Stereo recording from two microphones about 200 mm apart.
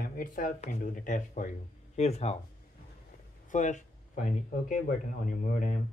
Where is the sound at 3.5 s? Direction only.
40° left (ahead or behind).